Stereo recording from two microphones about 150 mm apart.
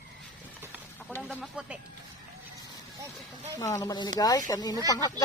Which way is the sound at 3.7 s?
25° left (ahead or behind).